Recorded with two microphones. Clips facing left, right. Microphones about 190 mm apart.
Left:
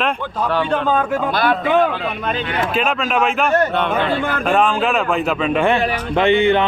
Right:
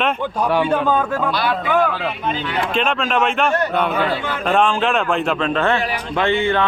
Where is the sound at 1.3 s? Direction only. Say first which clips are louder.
Left 3 dB; 50° left (ahead or behind).